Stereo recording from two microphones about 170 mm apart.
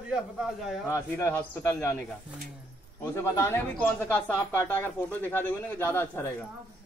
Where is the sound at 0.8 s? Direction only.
15° left (ahead or behind).